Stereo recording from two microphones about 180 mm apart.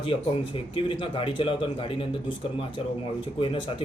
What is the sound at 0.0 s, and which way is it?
Speech, 30° left (ahead or behind).